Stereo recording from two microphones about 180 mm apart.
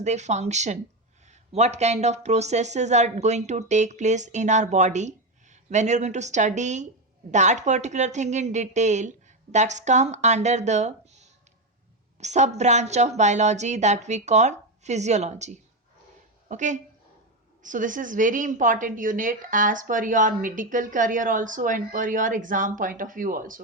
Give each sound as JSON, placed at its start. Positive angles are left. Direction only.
{"t": 0.0, "sound": "speech", "side_deg": -40}
{"t": 12.2, "sound": "a woman's voice", "side_deg": -40}